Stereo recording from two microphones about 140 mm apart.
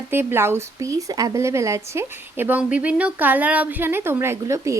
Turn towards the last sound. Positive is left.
turn(degrees=-20)  # may be behind; listen again after turning